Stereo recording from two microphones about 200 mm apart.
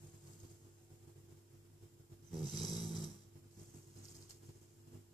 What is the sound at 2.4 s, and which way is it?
Dog, 20° left (ahead or behind).